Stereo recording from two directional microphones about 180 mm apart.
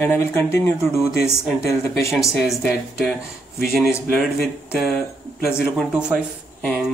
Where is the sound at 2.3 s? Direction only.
Centre (ahead or behind).